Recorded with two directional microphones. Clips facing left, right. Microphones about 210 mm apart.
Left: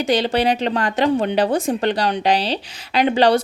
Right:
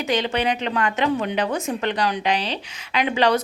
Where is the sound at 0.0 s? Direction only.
35° left (ahead or behind).